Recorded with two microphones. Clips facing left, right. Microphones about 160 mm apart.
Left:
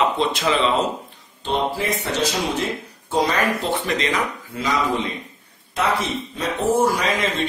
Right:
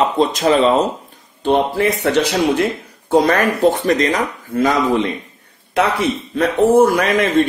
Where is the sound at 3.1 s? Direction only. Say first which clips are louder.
Right 6 dB; 55° right (ahead or behind).